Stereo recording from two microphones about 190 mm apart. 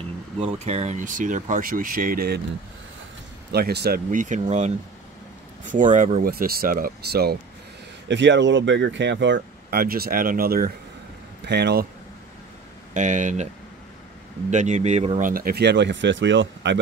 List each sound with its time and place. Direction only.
0.4 s speech: 30° right (ahead or behind); by 2.4 s 55° right (ahead or behind)
3.5 s speech: 55° right (ahead or behind); by 6.2 s 40° right (ahead or behind)
6.2 s speech: 50° right (ahead or behind)
8.1 s speech: 70° right (ahead or behind)
12.9 s speech: 40° right (ahead or behind)
14.5 s speech: 40° right (ahead or behind); by 16.7 s 70° right (ahead or behind)